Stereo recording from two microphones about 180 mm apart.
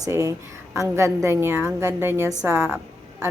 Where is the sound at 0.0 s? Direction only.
15° right (ahead or behind).